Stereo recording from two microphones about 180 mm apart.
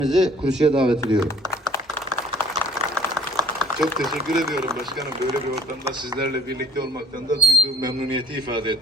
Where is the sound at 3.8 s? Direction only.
Centre (ahead or behind).